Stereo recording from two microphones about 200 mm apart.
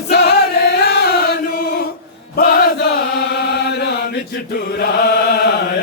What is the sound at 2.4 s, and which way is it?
Chant, 50° left (ahead or behind).